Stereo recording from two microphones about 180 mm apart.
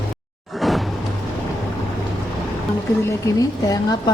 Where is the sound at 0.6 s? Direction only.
Centre (ahead or behind).